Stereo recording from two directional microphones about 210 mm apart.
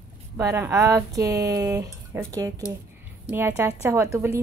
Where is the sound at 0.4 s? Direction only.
15° right (ahead or behind).